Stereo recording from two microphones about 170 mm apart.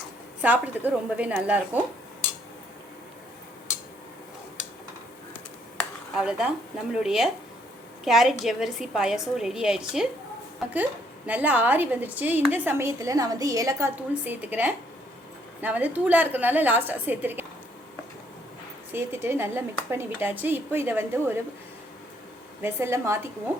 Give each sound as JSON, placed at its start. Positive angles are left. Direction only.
{"t": 0.4, "sound": "a woman's voice", "side_deg": -10}
{"t": 6.1, "sound": "a woman's voice", "side_deg": -5}
{"t": 11.3, "sound": "a woman's voice", "side_deg": -10}
{"t": 18.9, "sound": "a woman's voice", "side_deg": -15}
{"t": 22.6, "sound": "a woman's voice", "side_deg": -15}